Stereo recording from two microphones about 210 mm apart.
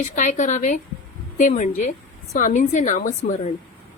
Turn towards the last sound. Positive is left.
turn(degrees=35)  # may be behind; listen again after turning